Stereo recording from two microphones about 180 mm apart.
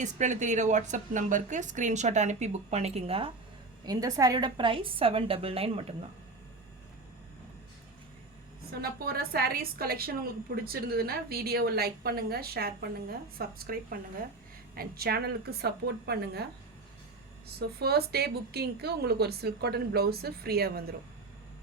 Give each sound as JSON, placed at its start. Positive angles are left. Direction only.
{"t": 0.0, "sound": "a woman's voice", "side_deg": -40}
{"t": 3.8, "sound": "a woman's voice", "side_deg": -20}
{"t": 8.7, "sound": "a woman's voice", "side_deg": -60}
{"t": 17.6, "sound": "a woman's voice", "side_deg": -60}